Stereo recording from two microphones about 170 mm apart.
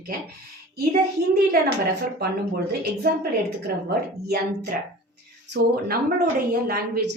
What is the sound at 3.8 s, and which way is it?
Speech, 70° right (ahead or behind).